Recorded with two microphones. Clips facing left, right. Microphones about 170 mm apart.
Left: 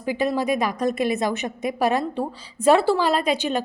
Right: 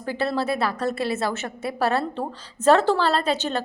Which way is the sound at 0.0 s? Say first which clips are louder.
Left 2 dB; 15° left (ahead or behind).